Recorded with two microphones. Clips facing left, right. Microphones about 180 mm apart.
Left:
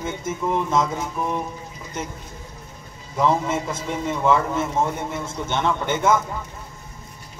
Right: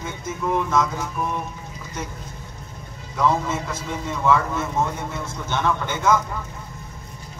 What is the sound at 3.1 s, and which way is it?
A man's voice, 25° left (ahead or behind).